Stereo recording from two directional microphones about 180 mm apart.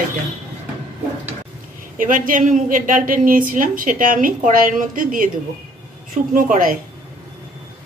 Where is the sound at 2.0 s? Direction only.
50° right (ahead or behind).